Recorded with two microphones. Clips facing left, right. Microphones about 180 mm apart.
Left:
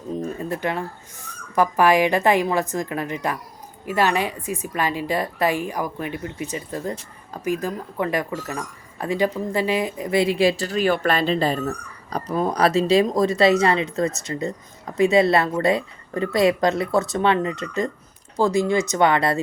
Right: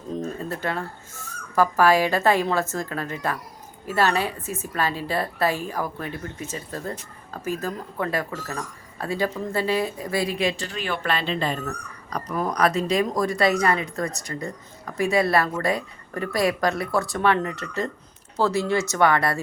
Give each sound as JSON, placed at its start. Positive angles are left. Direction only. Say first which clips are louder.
{"t": 0.1, "sound": "a woman's voice", "louder": "left 2 dB", "side_deg": 15}